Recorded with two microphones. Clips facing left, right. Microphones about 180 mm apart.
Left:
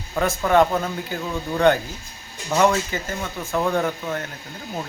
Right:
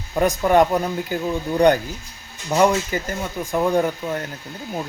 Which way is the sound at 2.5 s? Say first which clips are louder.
Right 2 dB; 15° right (ahead or behind).